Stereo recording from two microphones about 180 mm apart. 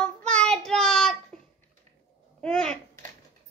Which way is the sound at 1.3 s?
5° left (ahead or behind).